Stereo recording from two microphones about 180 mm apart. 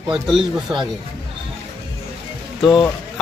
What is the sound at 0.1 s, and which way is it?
Speech, 5° right (ahead or behind).